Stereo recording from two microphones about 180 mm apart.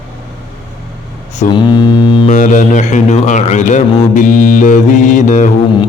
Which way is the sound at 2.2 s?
45° left (ahead or behind).